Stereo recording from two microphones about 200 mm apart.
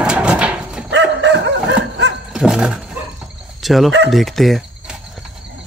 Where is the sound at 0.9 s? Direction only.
60° right (ahead or behind).